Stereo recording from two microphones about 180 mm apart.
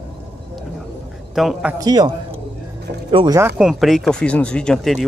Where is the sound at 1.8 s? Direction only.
20° right (ahead or behind).